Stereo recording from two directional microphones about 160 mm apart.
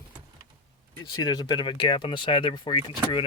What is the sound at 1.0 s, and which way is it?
Speech, 25° left (ahead or behind).